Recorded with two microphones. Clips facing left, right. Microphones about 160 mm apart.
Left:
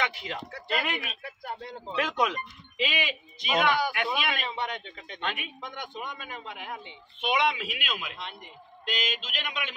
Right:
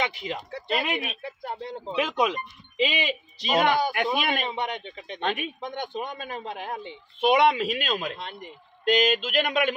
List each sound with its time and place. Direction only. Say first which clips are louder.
0.0 s speech: right 3 dB; 20° right (ahead or behind)
2.0 s speech: right 3 dB; 15° right (ahead or behind)
3.3 s a man's voice: right 3 dB; 35° right (ahead or behind)
3.9 s a sound: right 4 dB; 45° right (ahead or behind)
4.5 s speech: right 3 dB; 20° right (ahead or behind)
5.2 s a man's voice: right 6 dB; 40° right (ahead or behind)
5.6 s a man's voice: right 6 dB; 30° right (ahead or behind)
8.8 s a sound: right 12 dB; 50° right (ahead or behind)